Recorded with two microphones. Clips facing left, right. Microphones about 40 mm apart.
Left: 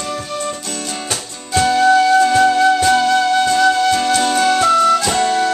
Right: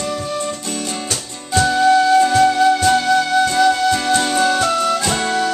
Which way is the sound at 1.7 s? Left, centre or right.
Centre.